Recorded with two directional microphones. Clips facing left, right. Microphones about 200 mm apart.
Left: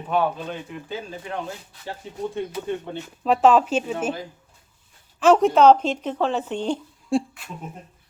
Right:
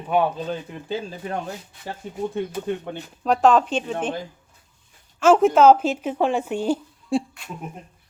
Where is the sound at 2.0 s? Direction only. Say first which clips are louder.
Right 3 dB; 50° right (ahead or behind).